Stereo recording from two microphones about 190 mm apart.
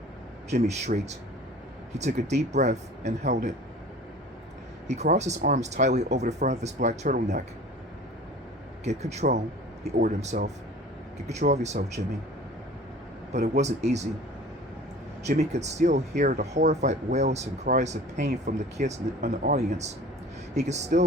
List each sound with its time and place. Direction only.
0.5 s speech: 35° right (ahead or behind)
4.9 s speech: 35° right (ahead or behind)
8.8 s speech: 35° right (ahead or behind)
13.6 s speech: 35° right (ahead or behind)
15.2 s speech: 35° right (ahead or behind)